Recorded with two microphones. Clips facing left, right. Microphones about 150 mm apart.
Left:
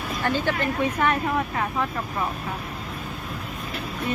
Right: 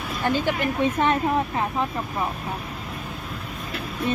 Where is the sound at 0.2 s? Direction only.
15° right (ahead or behind).